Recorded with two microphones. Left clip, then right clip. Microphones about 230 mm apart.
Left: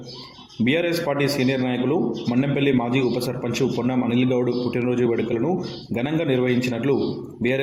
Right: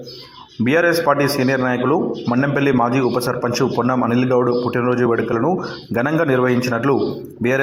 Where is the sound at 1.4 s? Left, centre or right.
Right.